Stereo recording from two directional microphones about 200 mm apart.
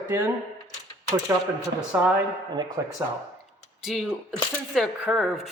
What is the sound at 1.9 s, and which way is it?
Speech, 10° right (ahead or behind).